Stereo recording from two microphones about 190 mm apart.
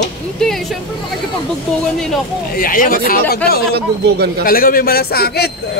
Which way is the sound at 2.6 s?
50° left (ahead or behind).